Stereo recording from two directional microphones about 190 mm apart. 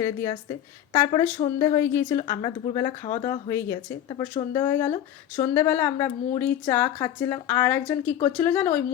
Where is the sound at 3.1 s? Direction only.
40° left (ahead or behind).